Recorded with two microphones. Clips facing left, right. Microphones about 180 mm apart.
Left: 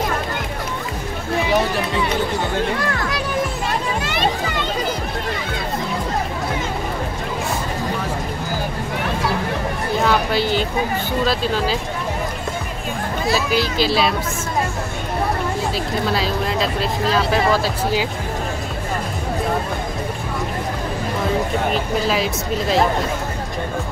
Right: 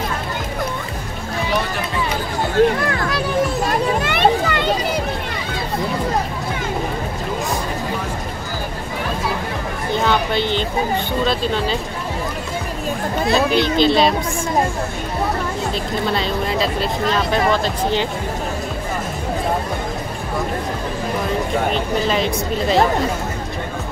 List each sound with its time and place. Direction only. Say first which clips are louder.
4.0 s a sound: right 5 dB; 60° right (ahead or behind)
9.9 s a sound: even; 5° left (ahead or behind)
11.2 s speech: left 1 dB; 5° left (ahead or behind)
13.3 s speech: right 4 dB; 5° left (ahead or behind)
16.1 s speech: right 1 dB; centre (ahead or behind)
21.7 s speech: right 1 dB; 5° left (ahead or behind)